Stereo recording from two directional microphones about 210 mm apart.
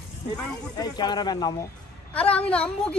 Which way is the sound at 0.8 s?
20° left (ahead or behind).